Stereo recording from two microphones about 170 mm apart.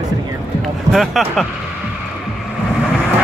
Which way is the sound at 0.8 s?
Centre (ahead or behind).